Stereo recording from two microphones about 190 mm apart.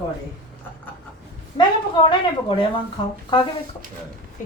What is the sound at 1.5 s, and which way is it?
A woman's voice, 25° left (ahead or behind).